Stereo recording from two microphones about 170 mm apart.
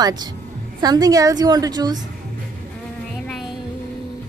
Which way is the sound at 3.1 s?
Centre (ahead or behind).